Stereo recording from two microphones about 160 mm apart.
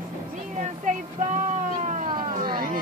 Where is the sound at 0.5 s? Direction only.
50° right (ahead or behind).